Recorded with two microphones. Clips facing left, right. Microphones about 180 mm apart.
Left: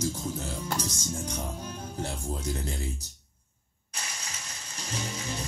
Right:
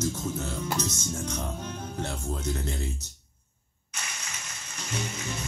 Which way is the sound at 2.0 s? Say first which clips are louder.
Even; 35° left (ahead or behind).